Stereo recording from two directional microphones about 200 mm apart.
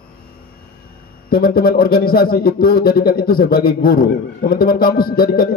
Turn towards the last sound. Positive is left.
turn(degrees=45)  # may be behind; listen again after turning